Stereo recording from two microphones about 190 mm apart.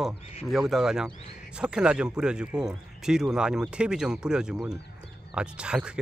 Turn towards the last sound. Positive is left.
turn(degrees=-5)  # may be behind; listen again after turning